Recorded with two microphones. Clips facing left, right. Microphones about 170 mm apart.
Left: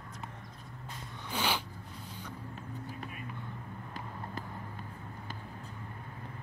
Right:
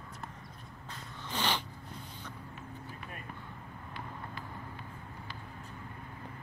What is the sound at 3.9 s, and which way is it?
Vehicle, 45° left (ahead or behind).